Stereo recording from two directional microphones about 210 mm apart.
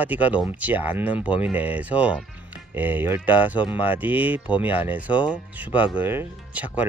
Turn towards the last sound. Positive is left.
turn(degrees=-5)  # may be behind; listen again after turning